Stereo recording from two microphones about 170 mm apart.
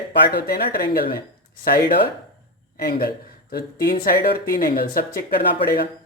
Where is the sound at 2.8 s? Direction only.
60° left (ahead or behind).